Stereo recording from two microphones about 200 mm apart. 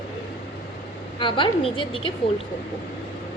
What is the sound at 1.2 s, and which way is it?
Speech, 25° left (ahead or behind).